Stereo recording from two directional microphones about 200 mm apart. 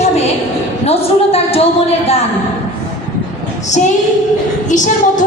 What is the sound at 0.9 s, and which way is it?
Speech, 30° left (ahead or behind).